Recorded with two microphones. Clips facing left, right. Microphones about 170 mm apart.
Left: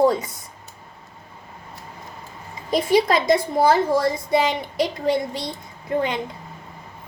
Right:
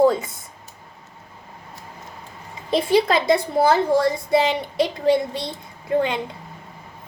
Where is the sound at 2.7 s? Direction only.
25° right (ahead or behind).